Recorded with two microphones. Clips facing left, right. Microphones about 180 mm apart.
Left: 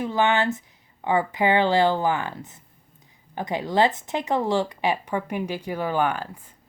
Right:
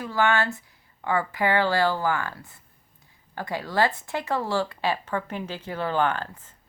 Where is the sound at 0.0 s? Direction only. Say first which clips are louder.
Left 2 dB; 20° left (ahead or behind).